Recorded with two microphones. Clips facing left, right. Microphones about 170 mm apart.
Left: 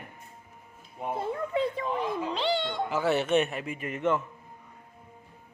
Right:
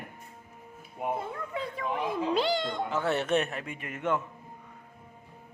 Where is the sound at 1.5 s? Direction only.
25° left (ahead or behind).